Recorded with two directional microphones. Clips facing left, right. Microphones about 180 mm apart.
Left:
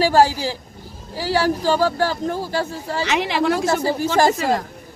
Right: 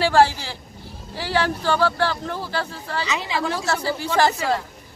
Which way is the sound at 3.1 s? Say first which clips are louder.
Left 9 dB; 70° left (ahead or behind).